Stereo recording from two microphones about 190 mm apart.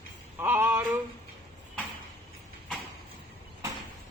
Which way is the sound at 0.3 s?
10° right (ahead or behind).